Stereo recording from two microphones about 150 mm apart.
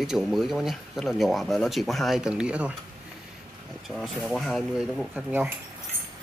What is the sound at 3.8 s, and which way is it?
Speech, centre (ahead or behind).